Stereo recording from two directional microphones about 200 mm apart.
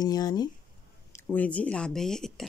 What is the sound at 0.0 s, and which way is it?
Speech, 20° left (ahead or behind).